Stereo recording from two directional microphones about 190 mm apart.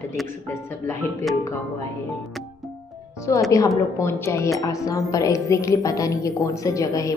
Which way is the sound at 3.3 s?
15° left (ahead or behind).